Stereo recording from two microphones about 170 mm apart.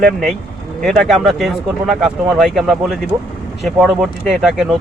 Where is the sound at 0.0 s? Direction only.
Centre (ahead or behind).